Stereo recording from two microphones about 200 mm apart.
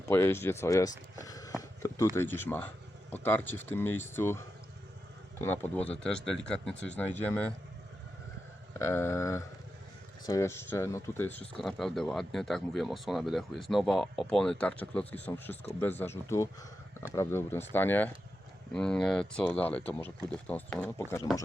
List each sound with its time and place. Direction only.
0.1 s speech: 10° left (ahead or behind)
1.2 s a sound: 15° left (ahead or behind)
2.1 s speech: 10° left (ahead or behind)
8.8 s speech: 10° left (ahead or behind)